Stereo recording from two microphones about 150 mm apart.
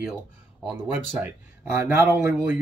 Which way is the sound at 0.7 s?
15° right (ahead or behind).